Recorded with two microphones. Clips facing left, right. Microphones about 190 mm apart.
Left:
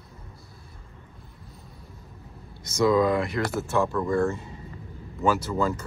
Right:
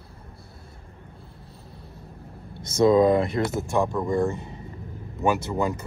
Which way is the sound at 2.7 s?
25° right (ahead or behind).